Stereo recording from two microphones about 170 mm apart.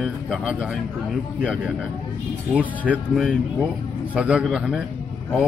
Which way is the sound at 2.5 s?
10° right (ahead or behind).